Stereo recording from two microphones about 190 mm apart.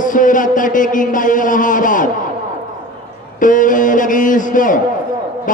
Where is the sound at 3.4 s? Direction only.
45° left (ahead or behind).